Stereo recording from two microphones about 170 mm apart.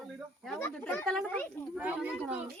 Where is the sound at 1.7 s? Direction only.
5° right (ahead or behind).